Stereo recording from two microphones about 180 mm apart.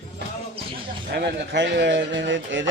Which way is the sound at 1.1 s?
70° right (ahead or behind).